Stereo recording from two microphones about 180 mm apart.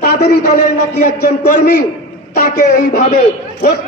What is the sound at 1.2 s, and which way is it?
A man's voice, 55° left (ahead or behind).